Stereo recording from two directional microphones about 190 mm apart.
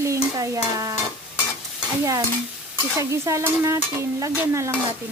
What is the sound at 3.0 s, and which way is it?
Stir, 15° right (ahead or behind).